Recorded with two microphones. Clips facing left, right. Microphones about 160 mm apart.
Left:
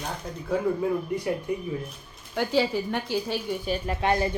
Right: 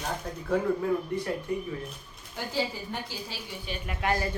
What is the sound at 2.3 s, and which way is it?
A woman's voice, 70° left (ahead or behind).